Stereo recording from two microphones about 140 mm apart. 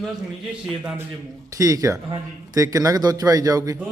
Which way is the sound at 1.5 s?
25° right (ahead or behind).